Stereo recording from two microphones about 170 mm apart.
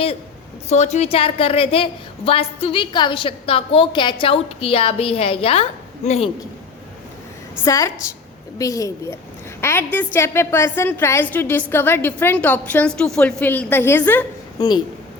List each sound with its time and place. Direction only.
0.7 s a woman's voice: 40° left (ahead or behind)
7.6 s a woman's voice: 20° left (ahead or behind)
14.6 s a woman's voice: 25° left (ahead or behind)